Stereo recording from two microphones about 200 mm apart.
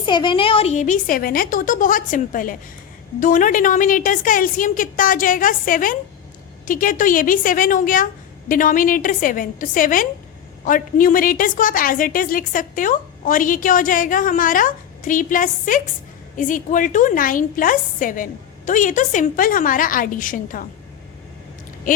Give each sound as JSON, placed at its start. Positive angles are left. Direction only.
{"t": 0.0, "sound": "a woman's voice", "side_deg": 25}